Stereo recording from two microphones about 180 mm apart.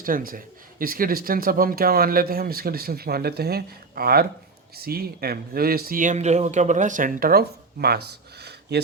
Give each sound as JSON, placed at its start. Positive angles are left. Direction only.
{"t": 0.0, "sound": "speech", "side_deg": -50}